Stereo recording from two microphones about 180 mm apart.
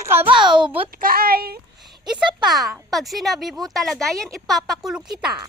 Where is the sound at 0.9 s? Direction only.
55° right (ahead or behind).